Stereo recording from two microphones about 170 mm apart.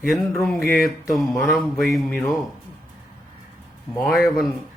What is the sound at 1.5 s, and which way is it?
Speech, centre (ahead or behind).